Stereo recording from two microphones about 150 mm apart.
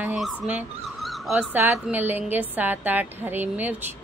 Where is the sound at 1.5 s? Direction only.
15° right (ahead or behind).